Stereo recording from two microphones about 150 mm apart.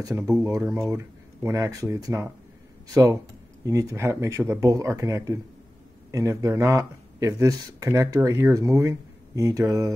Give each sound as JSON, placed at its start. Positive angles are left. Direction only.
{"t": 0.0, "sound": "speech", "side_deg": -20}